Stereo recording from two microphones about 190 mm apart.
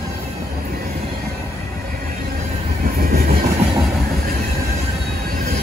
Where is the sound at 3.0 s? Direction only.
50° right (ahead or behind).